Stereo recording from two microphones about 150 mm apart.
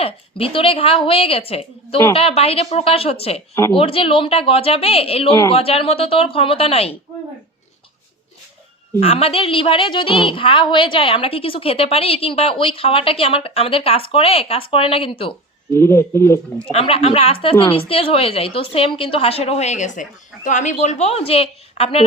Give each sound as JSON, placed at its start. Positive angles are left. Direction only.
{"t": 0.0, "sound": "a woman's voice", "side_deg": 40}
{"t": 9.0, "sound": "a woman's voice", "side_deg": 40}
{"t": 15.7, "sound": "speech", "side_deg": 15}
{"t": 16.7, "sound": "a woman's voice", "side_deg": 40}